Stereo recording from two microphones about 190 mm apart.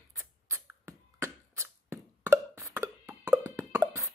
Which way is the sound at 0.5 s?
15° right (ahead or behind).